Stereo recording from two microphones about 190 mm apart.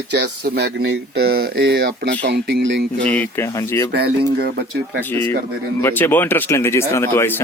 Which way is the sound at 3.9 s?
55° right (ahead or behind).